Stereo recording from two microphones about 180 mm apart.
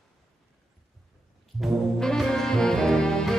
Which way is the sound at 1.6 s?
Centre (ahead or behind).